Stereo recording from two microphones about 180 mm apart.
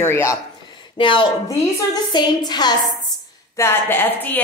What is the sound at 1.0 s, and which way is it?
A woman's voice, 25° left (ahead or behind).